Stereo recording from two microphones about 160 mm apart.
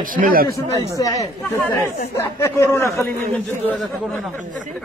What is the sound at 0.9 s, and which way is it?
A man's voice, 20° left (ahead or behind).